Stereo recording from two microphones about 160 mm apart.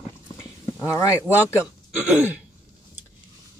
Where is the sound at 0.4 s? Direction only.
15° left (ahead or behind).